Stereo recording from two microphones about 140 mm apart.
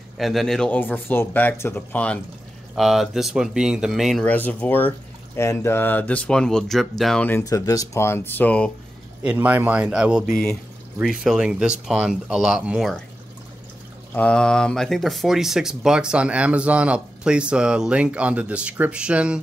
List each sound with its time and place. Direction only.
0.2 s speech: centre (ahead or behind)
0.7 s speech: 15° left (ahead or behind)
2.7 s speech: centre (ahead or behind)
4.2 s speech: 10° left (ahead or behind)
7.2 s speech: 20° left (ahead or behind)
9.2 s speech: 10° right (ahead or behind)
14.1 s speech: 10° left (ahead or behind); by 19.4 s 5° right (ahead or behind)